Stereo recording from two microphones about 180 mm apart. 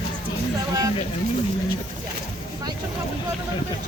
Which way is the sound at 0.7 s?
20° right (ahead or behind).